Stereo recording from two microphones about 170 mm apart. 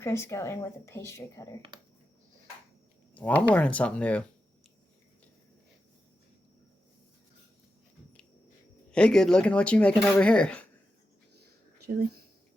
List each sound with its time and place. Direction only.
0.0 s speech: 15° left (ahead or behind)
3.2 s speech: 10° left (ahead or behind)
8.9 s speech: 5° left (ahead or behind)